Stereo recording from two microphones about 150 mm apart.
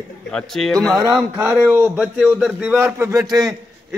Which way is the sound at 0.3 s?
5° left (ahead or behind).